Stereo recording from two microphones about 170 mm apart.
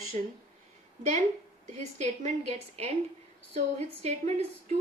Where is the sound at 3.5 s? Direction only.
40° right (ahead or behind).